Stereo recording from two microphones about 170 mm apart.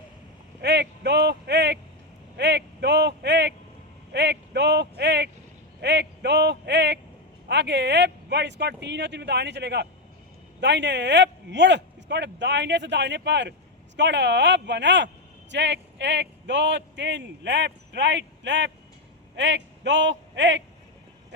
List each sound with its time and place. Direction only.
0.6 s a man's voice: 80° right